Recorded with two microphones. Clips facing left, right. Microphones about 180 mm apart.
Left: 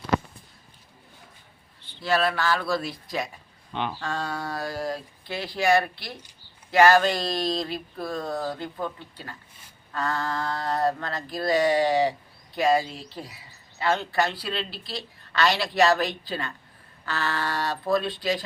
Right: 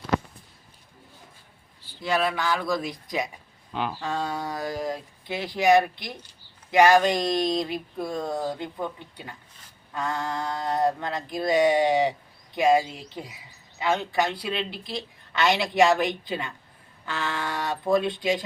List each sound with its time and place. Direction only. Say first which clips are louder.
2.0 s speech: left 1 dB; 15° right (ahead or behind)
3.7 s speech: right 1 dB; 5° right (ahead or behind)
4.0 s speech: right 2 dB; 20° right (ahead or behind)